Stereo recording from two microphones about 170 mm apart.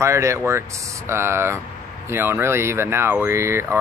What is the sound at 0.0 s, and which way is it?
Speech, 15° right (ahead or behind).